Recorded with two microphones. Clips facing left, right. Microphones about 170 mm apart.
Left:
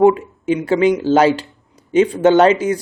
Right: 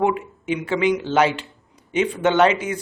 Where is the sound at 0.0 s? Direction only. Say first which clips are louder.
Left 9 dB; 35° left (ahead or behind).